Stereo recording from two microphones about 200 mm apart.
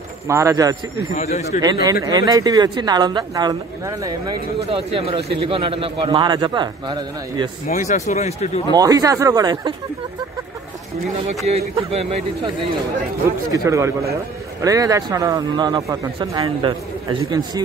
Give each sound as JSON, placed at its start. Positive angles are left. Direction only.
{"t": 0.3, "sound": "speech", "side_deg": -15}
{"t": 1.1, "sound": "speech", "side_deg": 30}
{"t": 1.6, "sound": "a man's voice", "side_deg": -20}
{"t": 7.6, "sound": "speech", "side_deg": 40}
{"t": 8.7, "sound": "a man's voice", "side_deg": -20}
{"t": 11.2, "sound": "a man's voice", "side_deg": -30}
{"t": 13.5, "sound": "a man's voice", "side_deg": -15}